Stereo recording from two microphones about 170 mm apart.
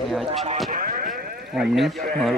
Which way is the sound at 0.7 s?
55° right (ahead or behind).